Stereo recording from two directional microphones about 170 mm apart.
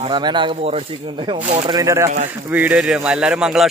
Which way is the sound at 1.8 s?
20° right (ahead or behind).